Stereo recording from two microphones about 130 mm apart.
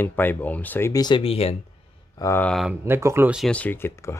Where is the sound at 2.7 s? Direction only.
20° right (ahead or behind).